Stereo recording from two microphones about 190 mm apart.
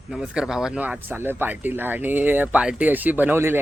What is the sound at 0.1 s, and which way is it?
Speech, 5° right (ahead or behind).